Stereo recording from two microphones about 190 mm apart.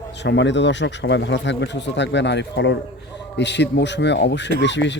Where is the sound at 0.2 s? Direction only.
70° left (ahead or behind).